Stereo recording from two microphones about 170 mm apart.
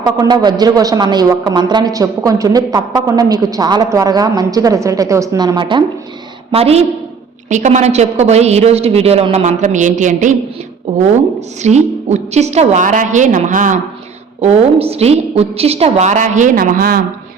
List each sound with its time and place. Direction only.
0.0 s a woman's voice: 25° right (ahead or behind); by 10.3 s 45° right (ahead or behind)
11.6 s a woman's voice: 40° right (ahead or behind)
14.4 s a woman's voice: 35° right (ahead or behind); by 17.0 s 60° right (ahead or behind)